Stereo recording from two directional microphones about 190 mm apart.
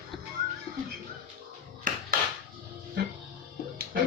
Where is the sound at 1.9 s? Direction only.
45° right (ahead or behind).